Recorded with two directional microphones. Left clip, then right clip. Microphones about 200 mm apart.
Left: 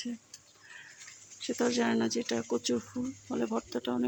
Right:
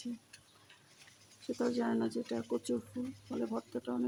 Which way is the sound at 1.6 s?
15° left (ahead or behind).